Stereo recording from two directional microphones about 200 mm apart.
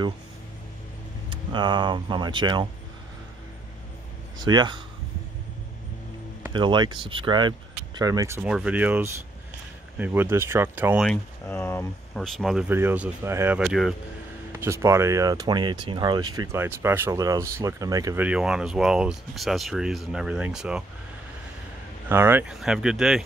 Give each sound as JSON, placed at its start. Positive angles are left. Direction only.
{"t": 1.3, "sound": "speech", "side_deg": -25}
{"t": 4.4, "sound": "speech", "side_deg": -20}
{"t": 6.5, "sound": "speech", "side_deg": -25}
{"t": 11.1, "sound": "speech", "side_deg": 10}
{"t": 12.4, "sound": "speech", "side_deg": 0}
{"t": 14.5, "sound": "speech", "side_deg": -10}
{"t": 22.1, "sound": "speech", "side_deg": -10}